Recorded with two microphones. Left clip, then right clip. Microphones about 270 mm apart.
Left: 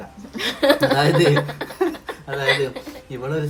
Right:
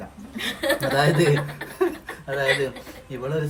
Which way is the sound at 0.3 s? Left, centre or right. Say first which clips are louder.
Left 7 dB; left.